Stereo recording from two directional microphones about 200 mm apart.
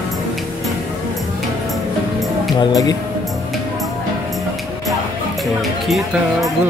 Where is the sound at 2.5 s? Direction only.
20° left (ahead or behind).